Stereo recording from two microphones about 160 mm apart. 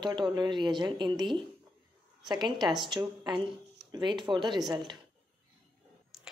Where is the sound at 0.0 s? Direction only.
25° right (ahead or behind).